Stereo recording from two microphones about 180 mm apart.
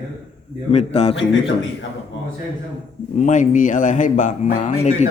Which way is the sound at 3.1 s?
45° left (ahead or behind).